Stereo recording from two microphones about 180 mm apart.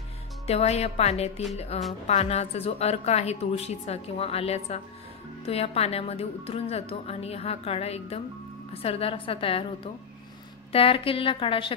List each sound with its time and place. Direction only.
0.5 s a woman's voice: 35° left (ahead or behind)
10.7 s a woman's voice: 30° left (ahead or behind)